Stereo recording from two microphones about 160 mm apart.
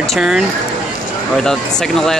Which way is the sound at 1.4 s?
5° left (ahead or behind).